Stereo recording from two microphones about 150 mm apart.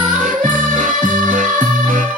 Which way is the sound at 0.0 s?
60° right (ahead or behind).